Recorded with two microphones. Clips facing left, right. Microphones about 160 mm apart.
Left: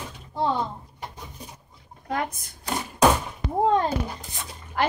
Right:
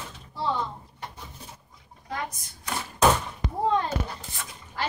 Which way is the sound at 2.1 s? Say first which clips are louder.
Left 5 dB; 55° left (ahead or behind).